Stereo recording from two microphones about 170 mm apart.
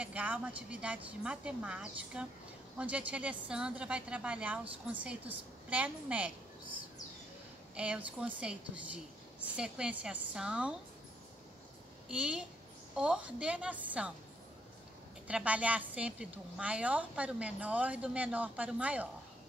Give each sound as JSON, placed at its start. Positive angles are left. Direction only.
{"t": 0.0, "sound": "a woman's voice", "side_deg": -10}
{"t": 7.7, "sound": "a woman's voice", "side_deg": -5}
{"t": 12.1, "sound": "a woman's voice", "side_deg": -5}
{"t": 15.2, "sound": "a woman's voice", "side_deg": -5}